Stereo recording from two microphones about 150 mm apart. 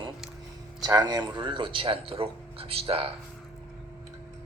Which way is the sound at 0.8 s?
25° right (ahead or behind).